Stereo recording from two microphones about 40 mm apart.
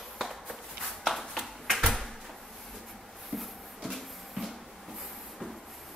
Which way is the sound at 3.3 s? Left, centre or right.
Centre.